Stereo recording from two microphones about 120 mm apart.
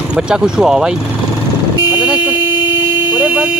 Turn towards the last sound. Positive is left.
turn(degrees=-10)  # may be behind; listen again after turning